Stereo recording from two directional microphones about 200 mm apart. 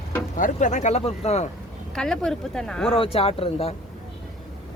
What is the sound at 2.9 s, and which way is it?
Speech, 30° left (ahead or behind).